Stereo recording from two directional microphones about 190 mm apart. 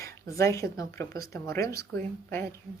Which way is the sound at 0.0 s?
15° left (ahead or behind).